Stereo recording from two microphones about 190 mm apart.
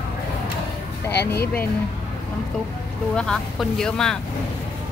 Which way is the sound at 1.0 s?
10° left (ahead or behind).